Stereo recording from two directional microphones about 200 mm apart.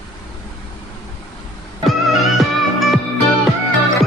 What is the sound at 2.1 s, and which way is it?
Music, centre (ahead or behind).